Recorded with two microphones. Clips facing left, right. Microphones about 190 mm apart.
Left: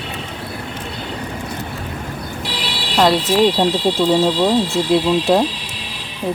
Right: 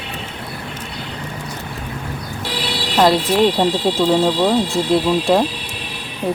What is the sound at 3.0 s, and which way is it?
Speech, centre (ahead or behind).